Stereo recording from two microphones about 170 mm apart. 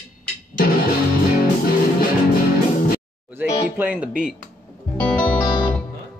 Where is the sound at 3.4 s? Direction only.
10° right (ahead or behind).